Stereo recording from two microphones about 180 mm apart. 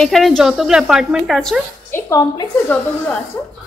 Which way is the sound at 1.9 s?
20° left (ahead or behind).